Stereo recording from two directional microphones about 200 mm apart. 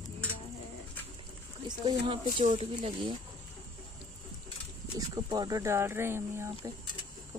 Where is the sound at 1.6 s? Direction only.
25° right (ahead or behind).